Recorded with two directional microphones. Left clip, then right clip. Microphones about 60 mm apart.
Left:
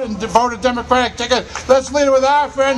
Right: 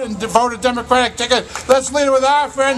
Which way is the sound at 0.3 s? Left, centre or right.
Right.